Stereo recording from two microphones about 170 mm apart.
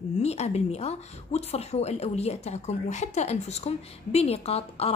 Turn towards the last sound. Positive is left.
turn(degrees=35)  # may be behind; listen again after turning